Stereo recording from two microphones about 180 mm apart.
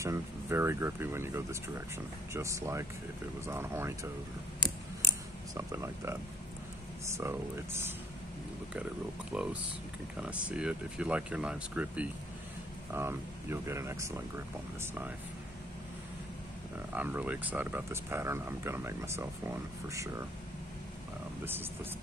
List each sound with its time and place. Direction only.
0.0 s speech: 15° right (ahead or behind)
5.5 s speech: 15° right (ahead or behind)
9.3 s speech: 5° right (ahead or behind)
16.9 s speech: 10° right (ahead or behind)